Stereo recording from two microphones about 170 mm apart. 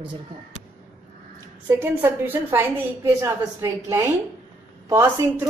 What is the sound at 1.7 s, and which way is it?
A woman's voice, 10° right (ahead or behind).